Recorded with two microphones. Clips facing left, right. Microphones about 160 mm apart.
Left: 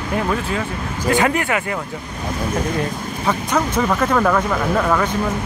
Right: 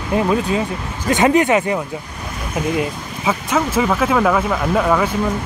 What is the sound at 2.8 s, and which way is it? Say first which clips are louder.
Speech: right 1 dB; 5° right (ahead or behind).